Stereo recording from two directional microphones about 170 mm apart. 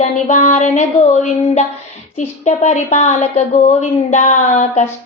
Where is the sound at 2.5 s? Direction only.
40° left (ahead or behind).